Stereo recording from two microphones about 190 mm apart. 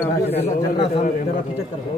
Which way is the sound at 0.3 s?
30° left (ahead or behind).